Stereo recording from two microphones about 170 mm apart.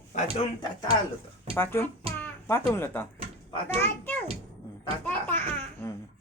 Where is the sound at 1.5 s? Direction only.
15° left (ahead or behind).